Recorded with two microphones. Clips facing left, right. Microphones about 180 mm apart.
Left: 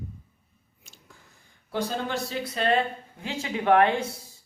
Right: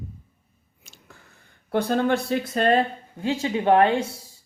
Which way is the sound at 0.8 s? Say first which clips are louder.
Right 3 dB; 70° right (ahead or behind).